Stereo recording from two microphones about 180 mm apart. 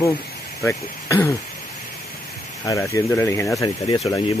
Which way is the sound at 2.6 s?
15° left (ahead or behind).